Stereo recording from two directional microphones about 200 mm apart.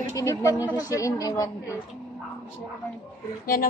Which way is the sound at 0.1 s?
15° left (ahead or behind).